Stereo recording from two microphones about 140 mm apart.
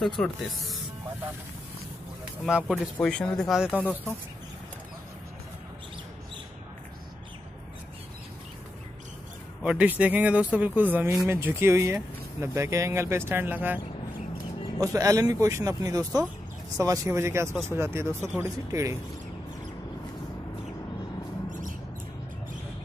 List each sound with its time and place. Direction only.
0.2 s speech: 5° left (ahead or behind)
2.7 s speech: 5° left (ahead or behind)
3.7 s speech: 10° left (ahead or behind)
9.6 s speech: 10° right (ahead or behind)
14.8 s speech: 25° right (ahead or behind)
21.5 s a sound: 65° right (ahead or behind)